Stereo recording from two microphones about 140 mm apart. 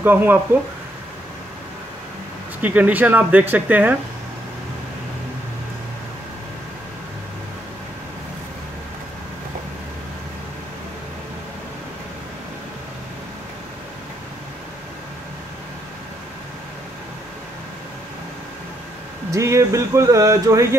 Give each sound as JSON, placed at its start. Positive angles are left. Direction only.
{"t": 0.0, "sound": "speech", "side_deg": -15}
{"t": 2.6, "sound": "speech", "side_deg": -10}
{"t": 19.3, "sound": "a sound", "side_deg": -20}